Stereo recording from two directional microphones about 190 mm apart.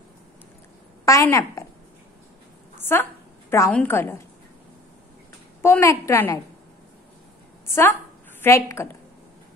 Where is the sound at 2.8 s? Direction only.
10° left (ahead or behind).